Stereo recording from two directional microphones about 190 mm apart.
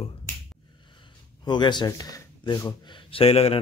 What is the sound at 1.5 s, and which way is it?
Speech, 25° left (ahead or behind).